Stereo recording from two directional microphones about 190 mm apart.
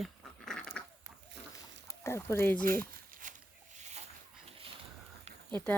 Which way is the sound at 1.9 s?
15° left (ahead or behind).